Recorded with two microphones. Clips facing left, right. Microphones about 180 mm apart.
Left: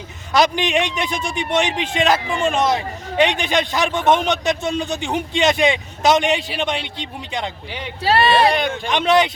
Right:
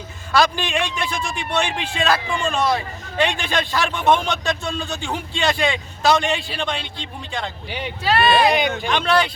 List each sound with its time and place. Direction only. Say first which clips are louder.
0.3 s a man's voice: left 2 dB; 20° left (ahead or behind)
8.9 s a man's voice: left 5 dB; 20° left (ahead or behind)